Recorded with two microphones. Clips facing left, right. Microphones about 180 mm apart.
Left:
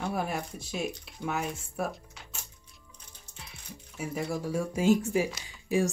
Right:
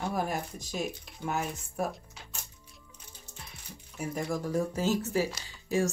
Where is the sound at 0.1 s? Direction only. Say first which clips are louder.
Even; 40° right (ahead or behind).